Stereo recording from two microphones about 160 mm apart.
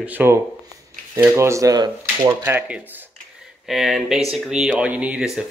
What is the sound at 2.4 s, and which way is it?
Speech, 10° right (ahead or behind).